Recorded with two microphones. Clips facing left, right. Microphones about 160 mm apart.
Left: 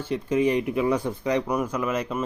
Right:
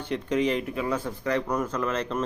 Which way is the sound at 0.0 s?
5° left (ahead or behind).